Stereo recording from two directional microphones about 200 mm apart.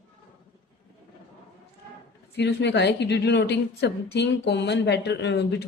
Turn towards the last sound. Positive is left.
turn(degrees=55)  # may be behind; listen again after turning